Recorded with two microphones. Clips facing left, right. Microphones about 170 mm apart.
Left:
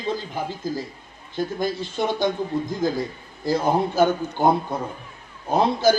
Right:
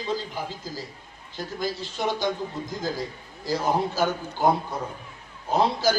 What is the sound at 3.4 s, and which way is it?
A man's voice, 55° left (ahead or behind).